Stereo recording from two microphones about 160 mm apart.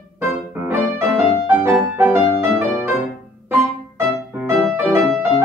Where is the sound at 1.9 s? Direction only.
15° right (ahead or behind).